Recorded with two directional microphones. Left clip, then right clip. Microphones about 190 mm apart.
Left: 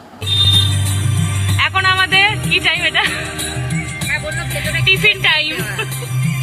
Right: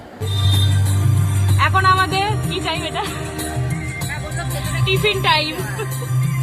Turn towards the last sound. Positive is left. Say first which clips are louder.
# left 2 dB
turn(degrees=-10)  # may be behind; listen again after turning